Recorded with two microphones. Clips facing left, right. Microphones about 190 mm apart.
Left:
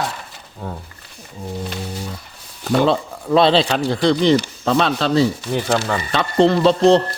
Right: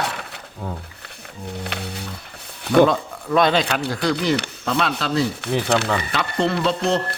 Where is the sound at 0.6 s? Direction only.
Centre (ahead or behind).